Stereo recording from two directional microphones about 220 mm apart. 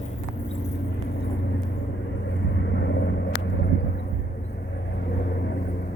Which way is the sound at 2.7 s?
55° left (ahead or behind).